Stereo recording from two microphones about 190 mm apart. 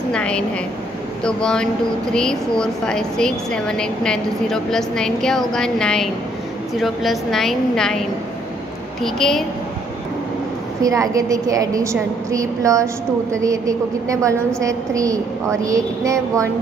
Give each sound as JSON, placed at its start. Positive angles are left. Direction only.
{"t": 0.1, "sound": "a woman's voice", "side_deg": 5}
{"t": 9.0, "sound": "a woman's voice", "side_deg": 0}
{"t": 10.8, "sound": "a woman's voice", "side_deg": -15}